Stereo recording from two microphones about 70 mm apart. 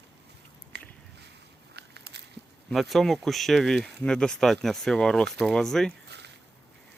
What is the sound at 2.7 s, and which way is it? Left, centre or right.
Speech, centre.